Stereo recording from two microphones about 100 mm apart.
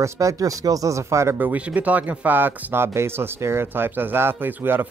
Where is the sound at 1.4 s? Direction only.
15° right (ahead or behind).